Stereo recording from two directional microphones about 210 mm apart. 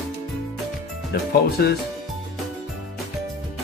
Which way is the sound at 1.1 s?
50° left (ahead or behind).